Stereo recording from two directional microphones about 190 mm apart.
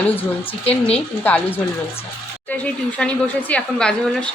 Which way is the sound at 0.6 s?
30° left (ahead or behind).